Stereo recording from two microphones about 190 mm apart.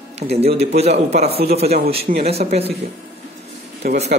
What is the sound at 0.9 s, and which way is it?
Speech, 60° right (ahead or behind).